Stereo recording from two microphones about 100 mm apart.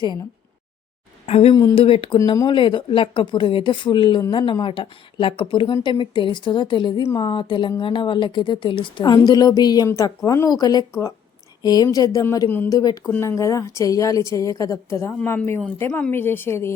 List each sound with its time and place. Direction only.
1.3 s a woman's voice: 75° left (ahead or behind)
1.7 s a woman's voice: 65° left (ahead or behind)
9.1 s a woman's voice: 40° left (ahead or behind)
13.1 s a woman's voice: 25° left (ahead or behind)